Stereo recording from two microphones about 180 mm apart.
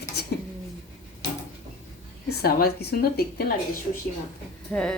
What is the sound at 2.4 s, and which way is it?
A woman's voice, 55° left (ahead or behind).